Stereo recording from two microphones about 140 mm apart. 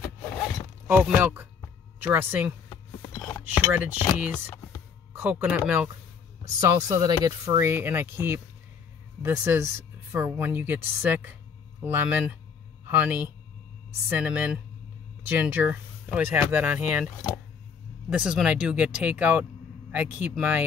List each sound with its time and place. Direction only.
0.0 s zipper: 25° left (ahead or behind)
0.8 s speech: 10° right (ahead or behind)
5.1 s speech: 15° right (ahead or behind)
18.1 s speech: 5° right (ahead or behind)